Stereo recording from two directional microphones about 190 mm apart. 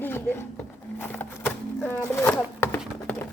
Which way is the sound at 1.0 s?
10° left (ahead or behind).